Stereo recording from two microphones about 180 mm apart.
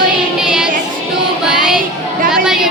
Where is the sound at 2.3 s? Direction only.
5° right (ahead or behind).